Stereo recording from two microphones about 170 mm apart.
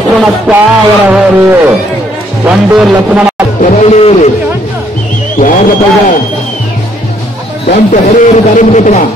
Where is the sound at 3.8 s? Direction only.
40° left (ahead or behind).